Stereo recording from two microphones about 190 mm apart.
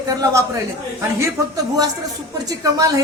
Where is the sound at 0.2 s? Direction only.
15° right (ahead or behind).